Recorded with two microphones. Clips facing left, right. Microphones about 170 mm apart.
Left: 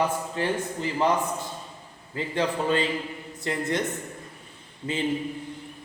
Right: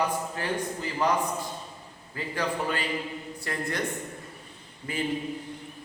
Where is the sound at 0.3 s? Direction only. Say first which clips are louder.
Left 3 dB; 25° left (ahead or behind).